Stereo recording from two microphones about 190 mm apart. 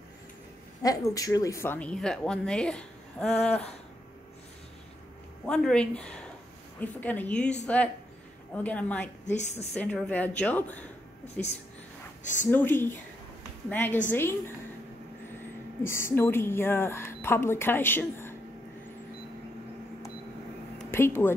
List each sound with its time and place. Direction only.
0.8 s speech: 20° left (ahead or behind); by 3.3 s 5° left (ahead or behind)
5.5 s speech: 5° left (ahead or behind)
9.2 s a woman's voice: 40° left (ahead or behind)
9.8 s speech: 5° left (ahead or behind)
12.2 s speech: 40° left (ahead or behind)
12.4 s speech: 10° left (ahead or behind)
15.8 s speech: 15° left (ahead or behind)
20.9 s speech: 10° left (ahead or behind)